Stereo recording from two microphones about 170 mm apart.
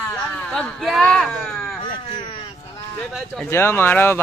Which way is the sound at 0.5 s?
Centre (ahead or behind).